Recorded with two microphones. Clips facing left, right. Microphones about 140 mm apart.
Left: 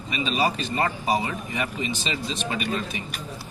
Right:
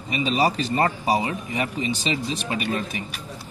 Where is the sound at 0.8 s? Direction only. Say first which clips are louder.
Right 2 dB; 35° right (ahead or behind).